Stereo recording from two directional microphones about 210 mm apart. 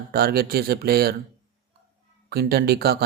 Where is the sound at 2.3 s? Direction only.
50° right (ahead or behind).